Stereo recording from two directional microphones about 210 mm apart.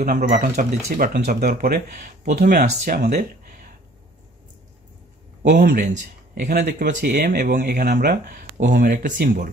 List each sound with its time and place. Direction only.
0.0 s speech: 40° right (ahead or behind)
5.5 s speech: 45° right (ahead or behind)